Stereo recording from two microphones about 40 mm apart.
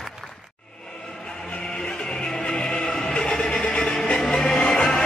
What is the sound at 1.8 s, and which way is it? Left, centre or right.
Music, left.